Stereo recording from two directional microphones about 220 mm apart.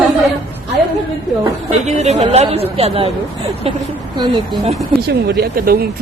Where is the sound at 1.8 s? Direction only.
30° right (ahead or behind).